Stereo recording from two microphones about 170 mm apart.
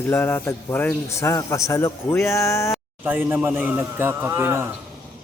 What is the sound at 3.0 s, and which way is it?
Speech, 10° right (ahead or behind).